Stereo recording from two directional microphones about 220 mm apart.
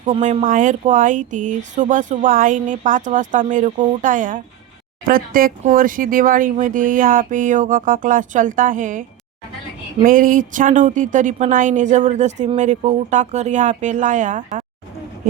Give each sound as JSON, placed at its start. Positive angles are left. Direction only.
{"t": 0.0, "sound": "a woman's voice", "side_deg": -30}